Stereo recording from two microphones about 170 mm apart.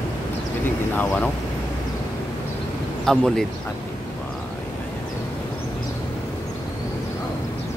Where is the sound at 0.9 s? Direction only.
10° left (ahead or behind).